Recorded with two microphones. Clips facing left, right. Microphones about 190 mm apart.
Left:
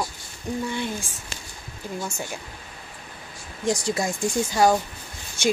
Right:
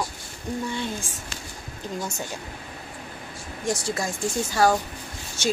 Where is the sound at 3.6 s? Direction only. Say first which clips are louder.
Left 3 dB; 15° left (ahead or behind).